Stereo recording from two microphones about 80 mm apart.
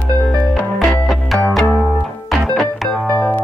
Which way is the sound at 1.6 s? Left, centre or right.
Centre.